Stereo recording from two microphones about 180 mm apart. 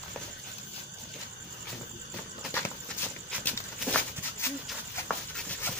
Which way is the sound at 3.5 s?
10° left (ahead or behind).